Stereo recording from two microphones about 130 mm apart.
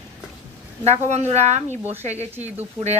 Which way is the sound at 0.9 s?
60° right (ahead or behind).